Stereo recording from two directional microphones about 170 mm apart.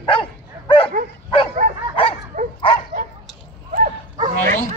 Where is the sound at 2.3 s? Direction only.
45° right (ahead or behind).